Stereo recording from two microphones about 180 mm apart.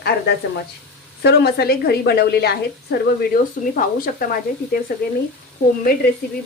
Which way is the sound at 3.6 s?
50° left (ahead or behind).